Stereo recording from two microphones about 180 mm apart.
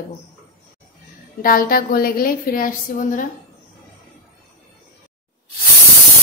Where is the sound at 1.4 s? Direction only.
50° left (ahead or behind).